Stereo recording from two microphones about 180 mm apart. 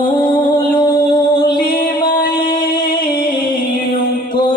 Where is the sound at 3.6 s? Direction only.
55° left (ahead or behind).